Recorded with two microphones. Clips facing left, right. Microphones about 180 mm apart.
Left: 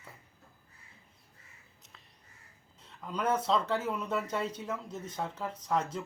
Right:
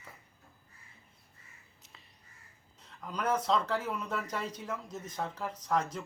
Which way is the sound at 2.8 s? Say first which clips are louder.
Left 2 dB; 5° left (ahead or behind).